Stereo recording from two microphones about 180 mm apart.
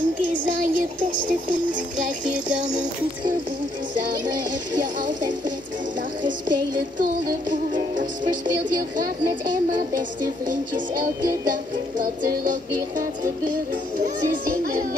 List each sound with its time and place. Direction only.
0.5 s child singing: 50° right (ahead or behind)
6.2 s music: 50° right (ahead or behind)
8.3 s child singing: 50° right (ahead or behind)
10.5 s child singing: 50° right (ahead or behind)
14.0 s child singing: 50° right (ahead or behind)